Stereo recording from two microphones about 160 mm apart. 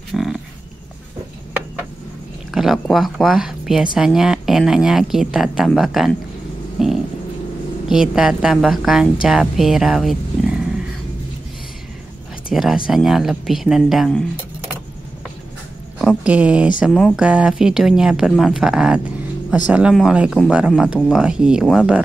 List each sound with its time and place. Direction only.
0.1 s livestock: centre (ahead or behind)
2.5 s speech: centre (ahead or behind)
6.8 s a sound: centre (ahead or behind)
7.9 s speech: 5° right (ahead or behind)
12.4 s speech: 5° right (ahead or behind)
16.0 s speech: 5° right (ahead or behind)